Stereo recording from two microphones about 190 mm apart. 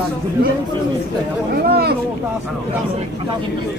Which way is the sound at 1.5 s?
55° right (ahead or behind).